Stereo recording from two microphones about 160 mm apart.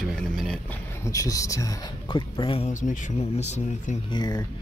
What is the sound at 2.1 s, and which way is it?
Speech, 35° left (ahead or behind).